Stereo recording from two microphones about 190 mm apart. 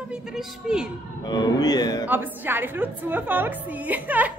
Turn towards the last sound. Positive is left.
turn(degrees=-10)  # may be behind; listen again after turning